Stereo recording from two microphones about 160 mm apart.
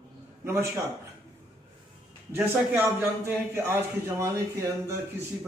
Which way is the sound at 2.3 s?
15° right (ahead or behind).